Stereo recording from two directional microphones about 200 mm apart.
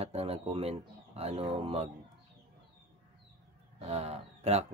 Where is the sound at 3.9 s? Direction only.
30° right (ahead or behind).